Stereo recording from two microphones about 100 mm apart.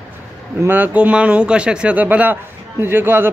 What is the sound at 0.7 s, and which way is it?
Speech, 20° right (ahead or behind).